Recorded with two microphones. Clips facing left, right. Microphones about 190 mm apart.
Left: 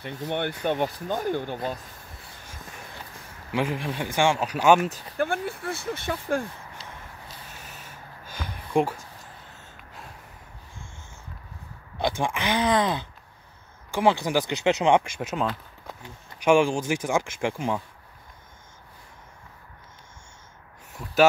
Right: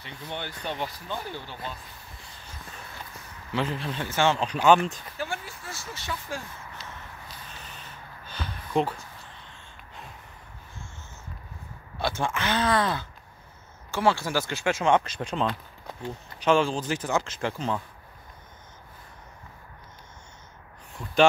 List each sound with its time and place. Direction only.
0.0 s speech: 55° left (ahead or behind)
3.5 s speech: 15° left (ahead or behind)
5.1 s speech: 55° left (ahead or behind)
7.4 s a sound: 10° left (ahead or behind)
12.0 s speech: 15° left (ahead or behind)
20.9 s speech: 5° left (ahead or behind)